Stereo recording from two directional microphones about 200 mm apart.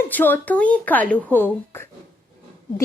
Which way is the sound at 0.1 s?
10° left (ahead or behind).